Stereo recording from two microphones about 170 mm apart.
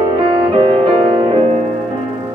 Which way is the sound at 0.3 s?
25° right (ahead or behind).